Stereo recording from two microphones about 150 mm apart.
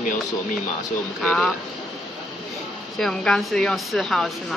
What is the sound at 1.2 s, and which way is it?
Speech, 5° left (ahead or behind).